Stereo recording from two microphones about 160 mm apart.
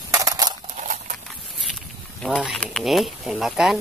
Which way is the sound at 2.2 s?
Centre (ahead or behind).